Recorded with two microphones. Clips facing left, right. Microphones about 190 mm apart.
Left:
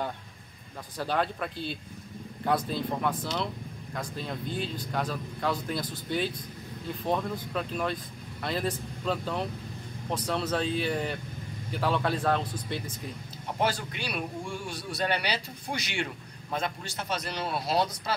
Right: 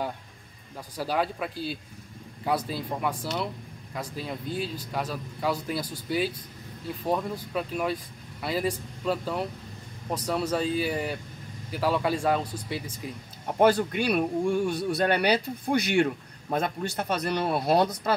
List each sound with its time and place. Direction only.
0.9 s speech: 5° right (ahead or behind)
13.6 s speech: 55° right (ahead or behind)